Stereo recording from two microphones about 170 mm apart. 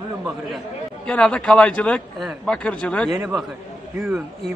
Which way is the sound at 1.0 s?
5° left (ahead or behind).